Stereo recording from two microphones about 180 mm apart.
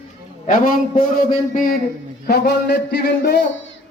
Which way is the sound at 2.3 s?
65° left (ahead or behind).